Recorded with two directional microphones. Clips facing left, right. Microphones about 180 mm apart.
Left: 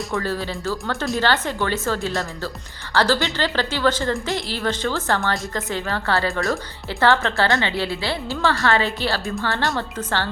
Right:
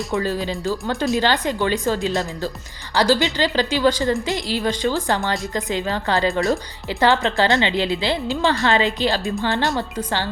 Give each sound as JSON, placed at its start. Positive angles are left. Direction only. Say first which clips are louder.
{"t": 0.1, "sound": "a woman's voice", "louder": "right 4 dB", "side_deg": -15}